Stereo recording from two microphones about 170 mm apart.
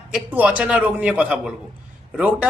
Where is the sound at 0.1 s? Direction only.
5° right (ahead or behind).